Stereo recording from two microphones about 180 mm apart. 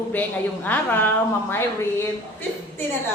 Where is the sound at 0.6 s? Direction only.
10° left (ahead or behind).